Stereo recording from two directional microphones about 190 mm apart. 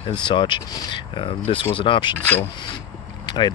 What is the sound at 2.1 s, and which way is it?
Speech, 10° left (ahead or behind).